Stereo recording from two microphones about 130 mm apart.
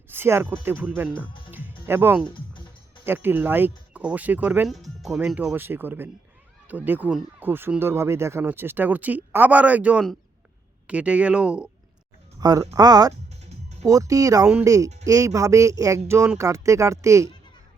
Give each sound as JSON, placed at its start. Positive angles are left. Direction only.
{"t": 0.1, "sound": "speech", "side_deg": -15}
{"t": 1.5, "sound": "music", "side_deg": -15}
{"t": 2.5, "sound": "music", "side_deg": 40}
{"t": 3.1, "sound": "speech", "side_deg": -15}
{"t": 4.7, "sound": "speech", "side_deg": 0}
{"t": 12.4, "sound": "speech", "side_deg": -30}